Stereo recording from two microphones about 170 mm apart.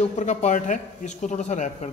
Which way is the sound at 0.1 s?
45° left (ahead or behind).